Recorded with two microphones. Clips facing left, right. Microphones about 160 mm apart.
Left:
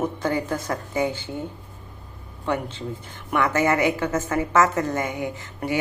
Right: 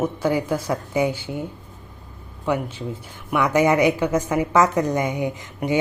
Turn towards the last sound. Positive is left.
turn(degrees=-15)  # may be behind; listen again after turning